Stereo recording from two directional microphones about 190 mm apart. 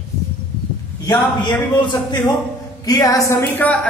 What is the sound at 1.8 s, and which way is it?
Speech, 25° left (ahead or behind).